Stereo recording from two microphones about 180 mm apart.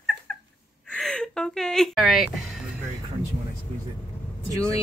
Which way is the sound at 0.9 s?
5° left (ahead or behind).